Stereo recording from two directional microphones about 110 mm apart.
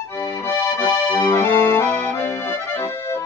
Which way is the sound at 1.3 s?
25° left (ahead or behind).